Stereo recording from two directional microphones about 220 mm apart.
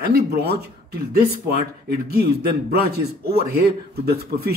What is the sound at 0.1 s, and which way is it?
Speech, 45° right (ahead or behind).